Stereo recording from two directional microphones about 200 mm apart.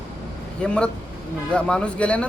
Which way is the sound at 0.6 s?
5° left (ahead or behind).